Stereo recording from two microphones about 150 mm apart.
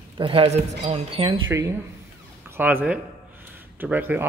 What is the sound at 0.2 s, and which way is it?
Speech, 35° right (ahead or behind).